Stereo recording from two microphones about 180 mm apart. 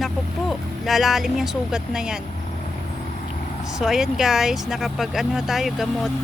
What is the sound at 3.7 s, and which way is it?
Speech, centre (ahead or behind).